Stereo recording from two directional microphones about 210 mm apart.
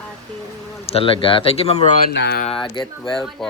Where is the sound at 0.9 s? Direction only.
25° left (ahead or behind).